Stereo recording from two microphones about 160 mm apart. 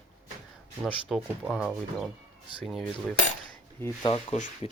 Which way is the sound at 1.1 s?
Centre (ahead or behind).